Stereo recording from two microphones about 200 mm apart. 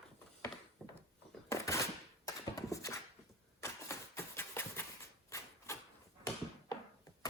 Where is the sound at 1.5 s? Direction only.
15° left (ahead or behind).